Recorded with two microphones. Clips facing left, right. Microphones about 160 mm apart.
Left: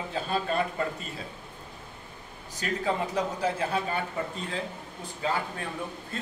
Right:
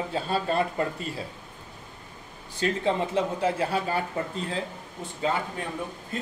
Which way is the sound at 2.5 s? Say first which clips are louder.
Right 4 dB; 25° right (ahead or behind).